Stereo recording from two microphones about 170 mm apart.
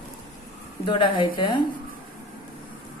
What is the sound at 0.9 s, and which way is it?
Speech, 30° left (ahead or behind).